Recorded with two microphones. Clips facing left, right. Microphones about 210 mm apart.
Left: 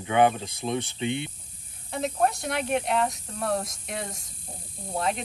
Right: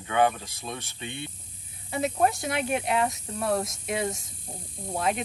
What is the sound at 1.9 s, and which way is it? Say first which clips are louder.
Speech: right 1 dB; centre (ahead or behind).